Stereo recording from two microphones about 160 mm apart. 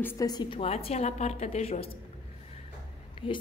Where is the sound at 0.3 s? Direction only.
30° left (ahead or behind).